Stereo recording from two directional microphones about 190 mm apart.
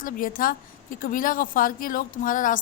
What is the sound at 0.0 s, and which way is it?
Speech, 45° left (ahead or behind).